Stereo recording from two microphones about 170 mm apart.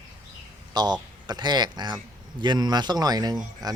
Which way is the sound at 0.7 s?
25° right (ahead or behind).